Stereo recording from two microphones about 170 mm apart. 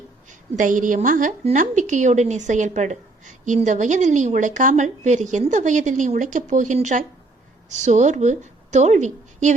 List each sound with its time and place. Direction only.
0.5 s a woman's voice: 50° right (ahead or behind)